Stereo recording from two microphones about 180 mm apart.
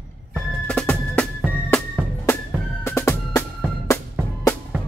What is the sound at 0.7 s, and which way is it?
Music, 5° left (ahead or behind).